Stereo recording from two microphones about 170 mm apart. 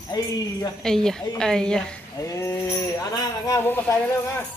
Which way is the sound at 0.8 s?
5° left (ahead or behind).